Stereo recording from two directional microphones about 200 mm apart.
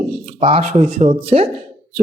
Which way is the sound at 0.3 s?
30° right (ahead or behind).